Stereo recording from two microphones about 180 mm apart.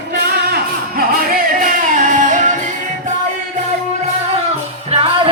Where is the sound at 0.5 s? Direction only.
55° right (ahead or behind).